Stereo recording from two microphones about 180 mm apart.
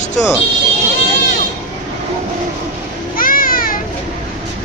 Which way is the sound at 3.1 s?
50° left (ahead or behind).